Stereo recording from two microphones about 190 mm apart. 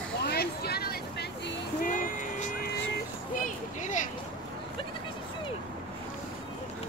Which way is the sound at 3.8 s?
40° left (ahead or behind).